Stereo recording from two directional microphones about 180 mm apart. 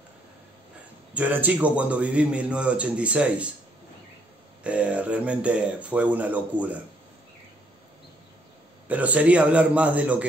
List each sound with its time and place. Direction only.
1.1 s a man's voice: 10° right (ahead or behind)
4.6 s a man's voice: 5° right (ahead or behind)
8.8 s a man's voice: 10° right (ahead or behind)